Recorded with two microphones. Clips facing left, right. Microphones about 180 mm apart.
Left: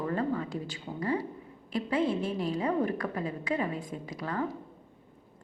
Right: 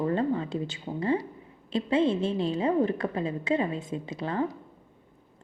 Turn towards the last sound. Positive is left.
turn(degrees=-25)  # may be behind; listen again after turning